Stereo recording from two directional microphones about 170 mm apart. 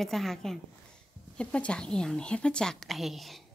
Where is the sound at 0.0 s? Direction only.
Centre (ahead or behind).